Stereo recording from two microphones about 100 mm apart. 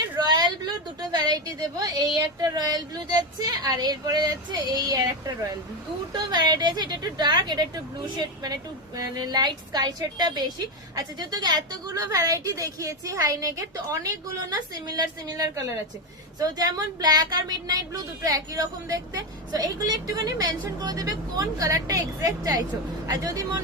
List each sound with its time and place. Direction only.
0.2 s a sound: 45° right (ahead or behind)
1.1 s speech: 45° right (ahead or behind)
6.3 s a woman's voice: 45° right (ahead or behind)